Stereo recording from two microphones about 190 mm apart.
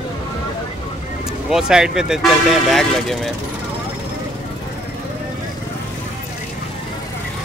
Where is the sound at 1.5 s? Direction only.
5° right (ahead or behind).